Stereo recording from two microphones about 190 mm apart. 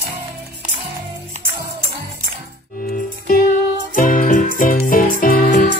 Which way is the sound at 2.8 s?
50° left (ahead or behind).